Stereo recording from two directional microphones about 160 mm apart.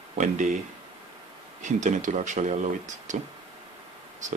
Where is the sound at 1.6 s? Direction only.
50° right (ahead or behind).